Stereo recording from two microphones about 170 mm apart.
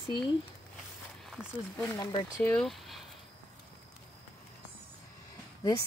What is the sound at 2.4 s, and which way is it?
Speech, 5° left (ahead or behind).